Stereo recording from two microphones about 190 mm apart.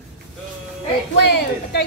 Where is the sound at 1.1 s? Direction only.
65° left (ahead or behind).